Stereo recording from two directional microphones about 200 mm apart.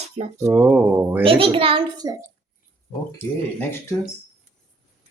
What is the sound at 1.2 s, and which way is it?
Speech, 25° right (ahead or behind).